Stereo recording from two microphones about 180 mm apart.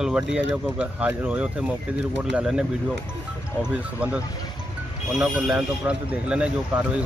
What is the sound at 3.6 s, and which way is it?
Speech, 5° right (ahead or behind).